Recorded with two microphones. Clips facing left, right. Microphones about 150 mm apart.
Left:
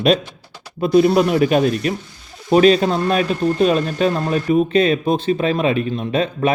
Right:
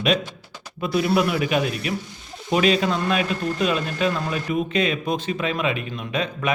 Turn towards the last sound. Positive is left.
turn(degrees=30)  # may be behind; listen again after turning